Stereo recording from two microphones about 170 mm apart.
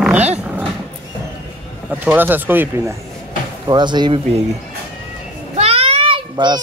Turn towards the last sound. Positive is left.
turn(degrees=-25)  # may be behind; listen again after turning